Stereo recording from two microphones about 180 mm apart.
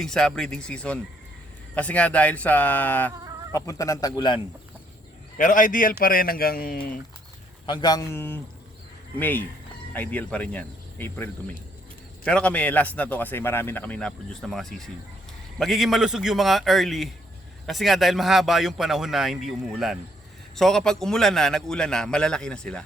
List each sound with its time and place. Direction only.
0.0 s a man's voice: 5° left (ahead or behind); by 4.4 s 25° left (ahead or behind)
5.4 s speech: 45° left (ahead or behind)
7.7 s a man's voice: 25° left (ahead or behind); by 22.8 s 5° left (ahead or behind)